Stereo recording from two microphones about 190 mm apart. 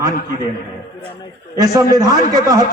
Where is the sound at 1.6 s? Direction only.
20° right (ahead or behind).